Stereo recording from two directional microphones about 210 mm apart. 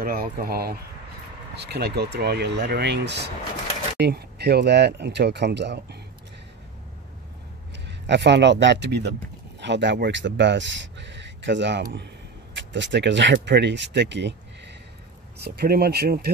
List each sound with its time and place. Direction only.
0.0 s speech: 45° right (ahead or behind)
7.7 s speech: 55° right (ahead or behind)